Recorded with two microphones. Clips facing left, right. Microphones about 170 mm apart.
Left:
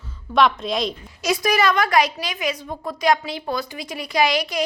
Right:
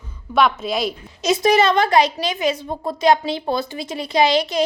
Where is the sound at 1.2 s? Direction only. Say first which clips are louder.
Right 4 dB; 25° right (ahead or behind).